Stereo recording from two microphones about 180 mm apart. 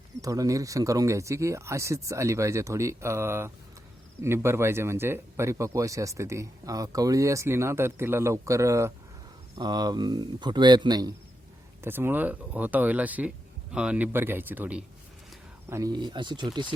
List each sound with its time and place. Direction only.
0.2 s a man's voice: 20° right (ahead or behind)
15.7 s a man's voice: 20° right (ahead or behind)